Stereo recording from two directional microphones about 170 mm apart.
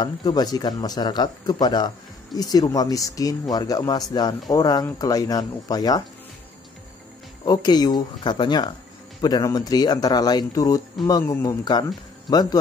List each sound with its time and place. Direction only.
0.0 s speech: 25° left (ahead or behind)
7.4 s speech: 25° left (ahead or behind)